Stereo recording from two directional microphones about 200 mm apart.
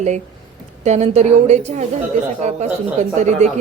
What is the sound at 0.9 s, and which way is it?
A woman's voice, 35° right (ahead or behind).